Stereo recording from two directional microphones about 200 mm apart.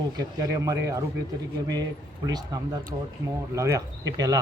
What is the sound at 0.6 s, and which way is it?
Speech, 15° right (ahead or behind).